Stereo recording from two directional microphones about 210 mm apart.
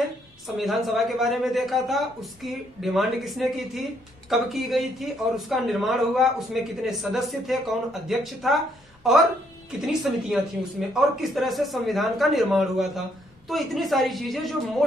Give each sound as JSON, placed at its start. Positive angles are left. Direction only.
{"t": 0.6, "sound": "a man's voice", "side_deg": 0}